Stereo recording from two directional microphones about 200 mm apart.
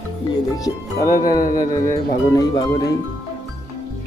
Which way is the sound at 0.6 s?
15° left (ahead or behind).